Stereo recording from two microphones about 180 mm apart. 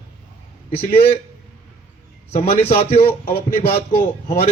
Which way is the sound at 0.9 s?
35° left (ahead or behind).